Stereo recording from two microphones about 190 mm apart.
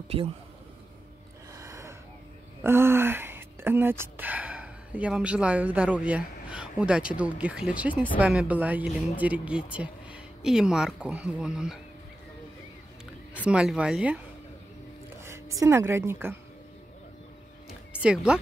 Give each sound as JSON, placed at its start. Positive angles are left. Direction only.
{"t": 1.5, "sound": "gasp", "side_deg": -15}
{"t": 2.6, "sound": "a woman's voice", "side_deg": -10}
{"t": 13.5, "sound": "speech", "side_deg": -5}
{"t": 18.0, "sound": "speech", "side_deg": -5}